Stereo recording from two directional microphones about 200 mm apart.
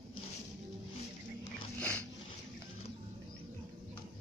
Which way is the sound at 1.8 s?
5° left (ahead or behind).